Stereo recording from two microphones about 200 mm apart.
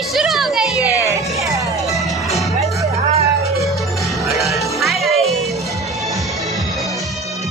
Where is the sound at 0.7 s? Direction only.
15° left (ahead or behind).